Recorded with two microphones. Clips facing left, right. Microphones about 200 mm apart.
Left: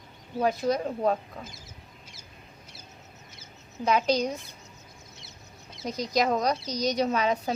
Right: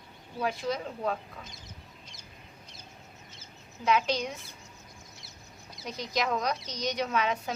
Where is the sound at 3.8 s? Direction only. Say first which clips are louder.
Left 3 dB; 40° left (ahead or behind).